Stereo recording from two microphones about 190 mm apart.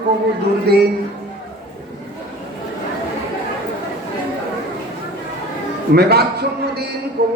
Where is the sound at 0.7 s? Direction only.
60° right (ahead or behind).